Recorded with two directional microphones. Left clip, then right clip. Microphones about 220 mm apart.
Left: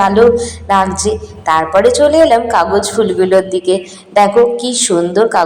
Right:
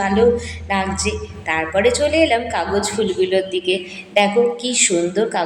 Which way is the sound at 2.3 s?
20° left (ahead or behind).